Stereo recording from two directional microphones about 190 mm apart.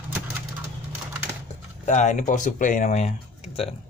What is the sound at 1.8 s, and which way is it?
Speech, 40° left (ahead or behind).